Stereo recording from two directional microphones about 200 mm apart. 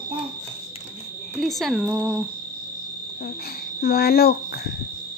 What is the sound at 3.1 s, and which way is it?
Speech, 50° left (ahead or behind).